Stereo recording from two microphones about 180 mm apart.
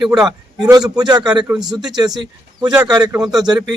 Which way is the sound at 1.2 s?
5° right (ahead or behind).